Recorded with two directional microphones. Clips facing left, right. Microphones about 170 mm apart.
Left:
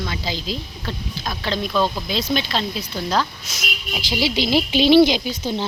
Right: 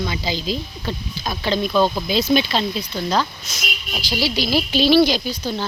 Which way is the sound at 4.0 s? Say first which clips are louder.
Left 1 dB; 20° left (ahead or behind).